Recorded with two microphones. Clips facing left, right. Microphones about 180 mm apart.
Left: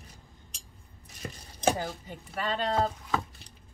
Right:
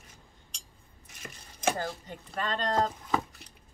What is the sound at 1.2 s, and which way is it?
Chopping, 35° left (ahead or behind).